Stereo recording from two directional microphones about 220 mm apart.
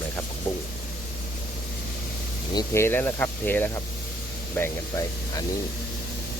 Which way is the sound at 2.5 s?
10° left (ahead or behind).